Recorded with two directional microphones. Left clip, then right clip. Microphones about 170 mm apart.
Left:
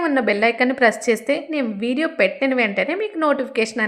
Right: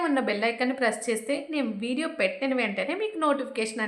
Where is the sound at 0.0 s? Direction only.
30° left (ahead or behind).